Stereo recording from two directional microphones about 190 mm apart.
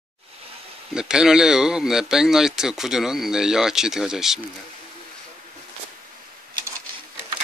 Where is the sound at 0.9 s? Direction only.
5° right (ahead or behind).